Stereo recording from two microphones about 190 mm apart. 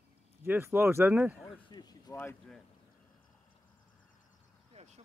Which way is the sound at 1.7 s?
20° left (ahead or behind).